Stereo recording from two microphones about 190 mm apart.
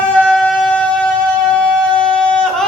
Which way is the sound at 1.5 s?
5° left (ahead or behind).